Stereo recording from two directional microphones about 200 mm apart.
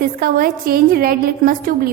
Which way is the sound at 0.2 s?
45° right (ahead or behind).